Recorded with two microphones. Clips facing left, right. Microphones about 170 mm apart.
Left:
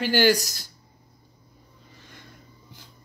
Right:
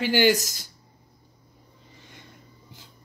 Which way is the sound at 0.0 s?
15° right (ahead or behind).